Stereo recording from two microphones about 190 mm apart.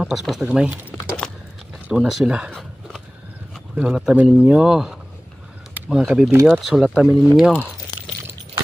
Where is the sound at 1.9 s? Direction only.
Centre (ahead or behind).